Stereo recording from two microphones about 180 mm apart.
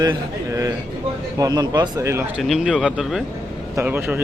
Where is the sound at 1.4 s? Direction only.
20° right (ahead or behind).